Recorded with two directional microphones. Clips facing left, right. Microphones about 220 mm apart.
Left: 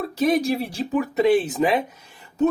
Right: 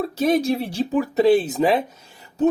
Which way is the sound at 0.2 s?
25° right (ahead or behind).